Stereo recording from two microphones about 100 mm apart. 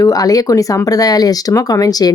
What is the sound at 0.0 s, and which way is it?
Speech, 35° left (ahead or behind).